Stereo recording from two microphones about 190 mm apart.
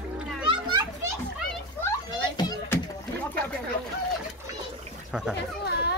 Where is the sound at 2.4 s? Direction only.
20° left (ahead or behind).